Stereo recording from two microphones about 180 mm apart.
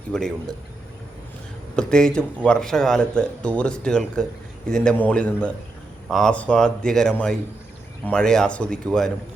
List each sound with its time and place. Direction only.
0.1 s speech: 5° left (ahead or behind)
1.7 s speech: 5° left (ahead or behind)